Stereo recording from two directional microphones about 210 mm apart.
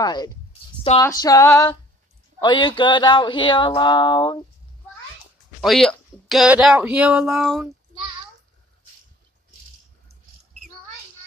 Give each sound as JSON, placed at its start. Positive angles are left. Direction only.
{"t": 0.0, "sound": "speech", "side_deg": 20}
{"t": 1.0, "sound": "female singing", "side_deg": 15}
{"t": 2.4, "sound": "speech", "side_deg": 20}
{"t": 5.6, "sound": "speech", "side_deg": 0}